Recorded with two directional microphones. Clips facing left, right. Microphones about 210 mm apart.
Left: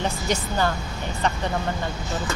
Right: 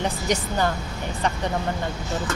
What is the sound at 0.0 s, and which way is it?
Speech, 15° right (ahead or behind).